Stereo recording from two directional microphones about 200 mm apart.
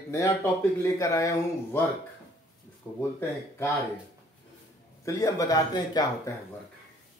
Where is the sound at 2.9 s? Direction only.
10° left (ahead or behind).